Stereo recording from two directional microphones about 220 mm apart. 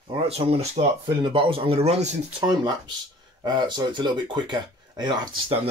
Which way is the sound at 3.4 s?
20° right (ahead or behind).